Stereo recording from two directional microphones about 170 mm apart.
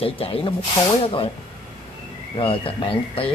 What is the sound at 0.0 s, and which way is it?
Speech, 35° left (ahead or behind).